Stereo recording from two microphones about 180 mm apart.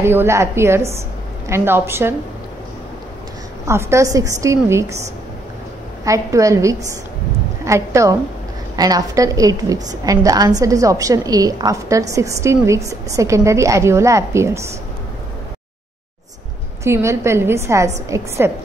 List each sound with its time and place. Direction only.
0.0 s a woman's voice: 15° right (ahead or behind)
3.6 s a woman's voice: 15° right (ahead or behind)
6.0 s a woman's voice: 15° right (ahead or behind)
16.8 s a woman's voice: 15° right (ahead or behind)